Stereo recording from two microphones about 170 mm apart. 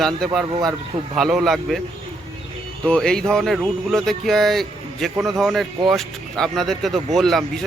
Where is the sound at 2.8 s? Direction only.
5° left (ahead or behind).